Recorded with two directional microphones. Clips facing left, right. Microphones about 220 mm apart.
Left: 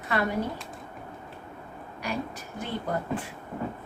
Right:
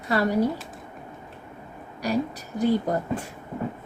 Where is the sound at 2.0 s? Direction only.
40° right (ahead or behind).